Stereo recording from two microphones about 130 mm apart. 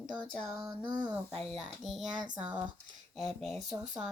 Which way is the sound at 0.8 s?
30° right (ahead or behind).